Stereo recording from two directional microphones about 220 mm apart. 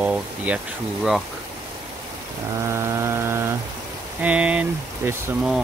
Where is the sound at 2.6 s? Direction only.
15° right (ahead or behind).